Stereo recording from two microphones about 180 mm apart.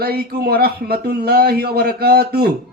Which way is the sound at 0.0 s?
60° right (ahead or behind).